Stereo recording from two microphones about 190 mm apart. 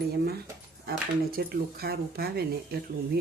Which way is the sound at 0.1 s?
55° right (ahead or behind).